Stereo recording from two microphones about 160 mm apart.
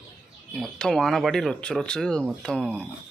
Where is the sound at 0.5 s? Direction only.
5° left (ahead or behind).